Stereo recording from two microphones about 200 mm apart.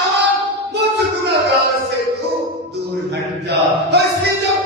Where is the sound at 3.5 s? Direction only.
55° right (ahead or behind).